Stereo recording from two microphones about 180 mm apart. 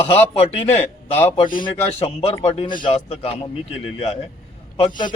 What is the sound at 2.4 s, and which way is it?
A man's voice, 30° left (ahead or behind).